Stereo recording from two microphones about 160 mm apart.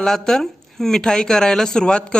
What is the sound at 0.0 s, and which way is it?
Speech, 5° left (ahead or behind).